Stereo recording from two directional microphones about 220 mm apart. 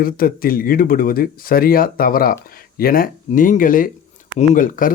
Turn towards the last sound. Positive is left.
turn(degrees=40)  # may be behind; listen again after turning